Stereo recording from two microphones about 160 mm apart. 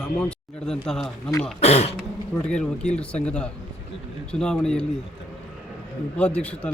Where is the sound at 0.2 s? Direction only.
5° left (ahead or behind).